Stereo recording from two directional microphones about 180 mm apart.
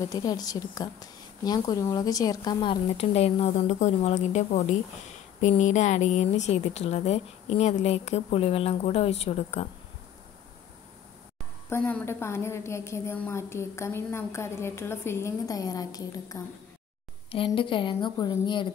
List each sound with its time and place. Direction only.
0.0 s a woman's voice: 20° left (ahead or behind); by 9.7 s 35° left (ahead or behind)
11.7 s a woman's voice: 10° left (ahead or behind)
17.6 s a woman's voice: 30° left (ahead or behind)